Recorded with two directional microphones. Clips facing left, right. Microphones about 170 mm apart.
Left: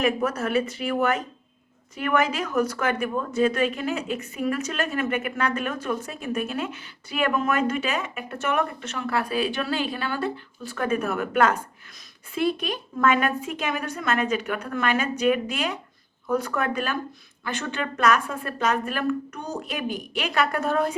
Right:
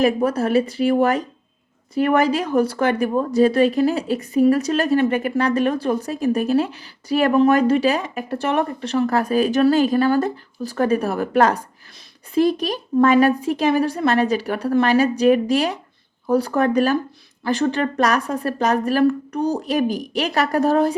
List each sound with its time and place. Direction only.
0.0 s speech: 30° right (ahead or behind)